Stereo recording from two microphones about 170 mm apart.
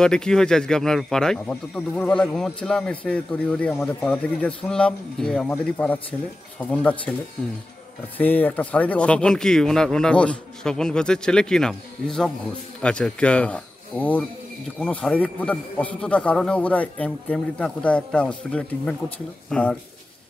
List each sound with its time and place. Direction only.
0.0 s a man's voice: 5° left (ahead or behind)
8.2 s a man's voice: 10° left (ahead or behind)